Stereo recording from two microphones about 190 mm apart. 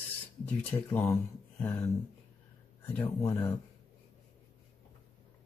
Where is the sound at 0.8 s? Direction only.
15° left (ahead or behind).